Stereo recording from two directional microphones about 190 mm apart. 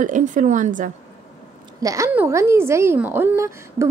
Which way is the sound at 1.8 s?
15° right (ahead or behind).